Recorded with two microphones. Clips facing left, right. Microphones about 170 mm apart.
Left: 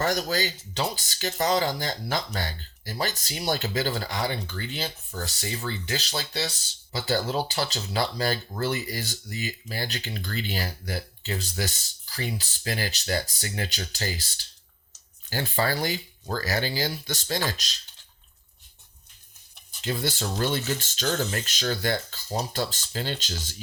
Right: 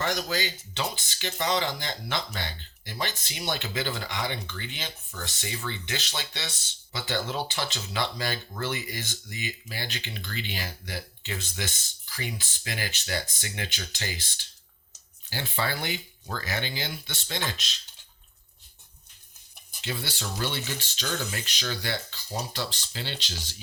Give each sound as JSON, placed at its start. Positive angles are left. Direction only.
{"t": 0.0, "sound": "speech", "side_deg": 40}
{"t": 19.8, "sound": "speech", "side_deg": 45}